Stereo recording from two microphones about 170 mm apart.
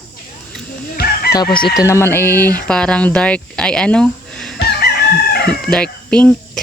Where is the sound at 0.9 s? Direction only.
65° left (ahead or behind).